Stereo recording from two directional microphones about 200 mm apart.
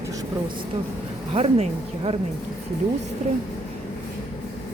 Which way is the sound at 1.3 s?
30° right (ahead or behind).